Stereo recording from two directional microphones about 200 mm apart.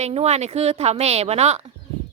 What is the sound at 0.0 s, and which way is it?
A woman's voice, 30° right (ahead or behind).